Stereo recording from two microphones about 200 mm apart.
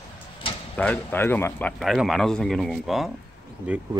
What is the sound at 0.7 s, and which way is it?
A man's voice, 5° left (ahead or behind).